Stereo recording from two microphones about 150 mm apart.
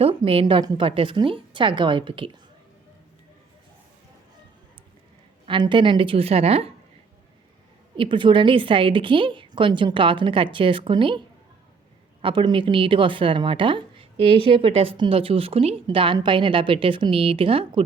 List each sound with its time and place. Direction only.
0.0 s a woman's voice: 35° right (ahead or behind)
5.5 s a woman's voice: 30° right (ahead or behind)
7.9 s a woman's voice: 35° right (ahead or behind)
12.2 s a woman's voice: 35° right (ahead or behind)